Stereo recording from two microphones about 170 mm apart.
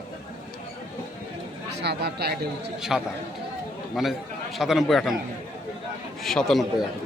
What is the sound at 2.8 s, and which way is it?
A man's voice, 5° right (ahead or behind).